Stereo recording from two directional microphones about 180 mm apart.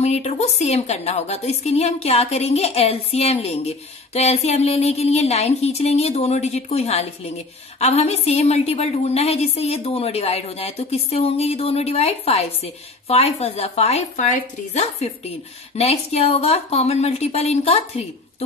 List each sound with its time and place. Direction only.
0.0 s a woman's voice: 40° left (ahead or behind)